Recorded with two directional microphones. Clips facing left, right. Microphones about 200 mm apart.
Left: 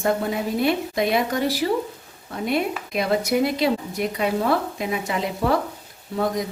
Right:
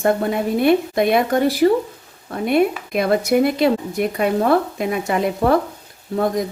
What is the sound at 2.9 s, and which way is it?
Speech, 55° right (ahead or behind).